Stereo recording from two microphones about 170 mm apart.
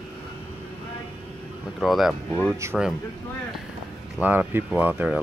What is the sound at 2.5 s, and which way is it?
Speech, 15° right (ahead or behind).